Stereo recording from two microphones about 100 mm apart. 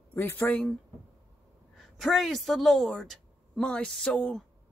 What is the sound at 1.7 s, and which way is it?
A woman's voice, centre (ahead or behind).